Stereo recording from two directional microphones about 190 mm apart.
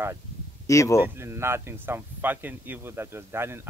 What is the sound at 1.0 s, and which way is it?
Speech, 15° right (ahead or behind).